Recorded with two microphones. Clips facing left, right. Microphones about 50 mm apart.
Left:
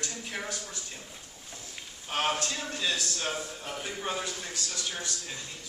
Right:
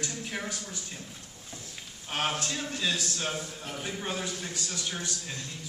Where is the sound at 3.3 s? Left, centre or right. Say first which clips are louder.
Left 1 dB; centre.